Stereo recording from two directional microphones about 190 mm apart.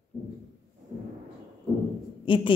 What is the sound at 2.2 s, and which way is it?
Speech, 25° left (ahead or behind).